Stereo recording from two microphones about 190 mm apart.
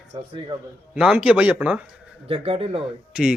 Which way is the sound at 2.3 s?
30° right (ahead or behind).